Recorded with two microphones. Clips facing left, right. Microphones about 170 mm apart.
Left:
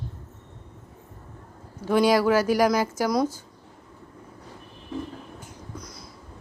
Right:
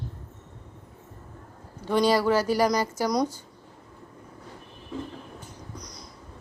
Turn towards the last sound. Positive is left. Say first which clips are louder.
# left 2 dB
turn(degrees=5)  # may be behind; listen again after turning